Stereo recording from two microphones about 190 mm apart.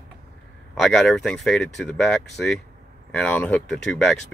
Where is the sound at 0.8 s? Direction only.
Centre (ahead or behind).